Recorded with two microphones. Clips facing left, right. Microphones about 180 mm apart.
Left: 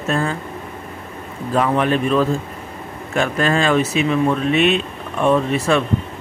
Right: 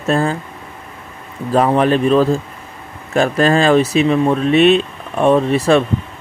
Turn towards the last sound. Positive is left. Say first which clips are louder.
# right 4 dB
turn(degrees=-35)  # may be behind; listen again after turning